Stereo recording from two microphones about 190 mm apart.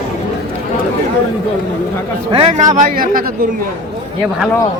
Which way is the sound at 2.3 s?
30° right (ahead or behind).